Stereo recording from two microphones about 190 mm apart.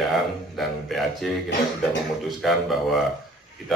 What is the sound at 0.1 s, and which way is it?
A man's voice, centre (ahead or behind).